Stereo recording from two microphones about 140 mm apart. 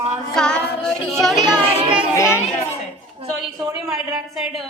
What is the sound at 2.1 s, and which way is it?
Speech, 20° left (ahead or behind).